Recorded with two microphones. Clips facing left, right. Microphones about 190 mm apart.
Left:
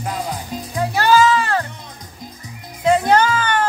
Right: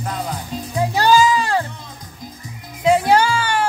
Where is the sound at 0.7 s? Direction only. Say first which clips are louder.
Even; 15° right (ahead or behind).